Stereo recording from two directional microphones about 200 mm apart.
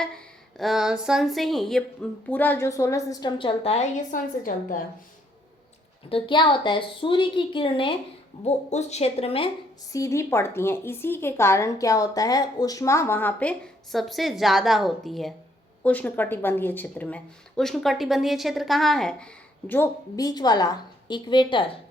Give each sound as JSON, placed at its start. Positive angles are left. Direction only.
{"t": 0.0, "sound": "a woman's voice", "side_deg": 5}
{"t": 6.1, "sound": "a woman's voice", "side_deg": 25}
{"t": 9.9, "sound": "speech", "side_deg": 15}